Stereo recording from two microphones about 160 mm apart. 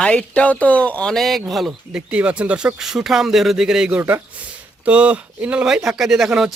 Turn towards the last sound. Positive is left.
turn(degrees=0)  # may be behind; listen again after turning